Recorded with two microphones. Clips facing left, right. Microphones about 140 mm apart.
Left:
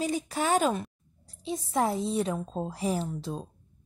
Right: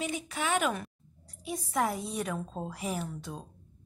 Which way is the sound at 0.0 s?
35° left (ahead or behind).